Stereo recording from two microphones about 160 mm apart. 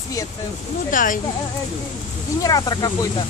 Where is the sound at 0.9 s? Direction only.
55° left (ahead or behind).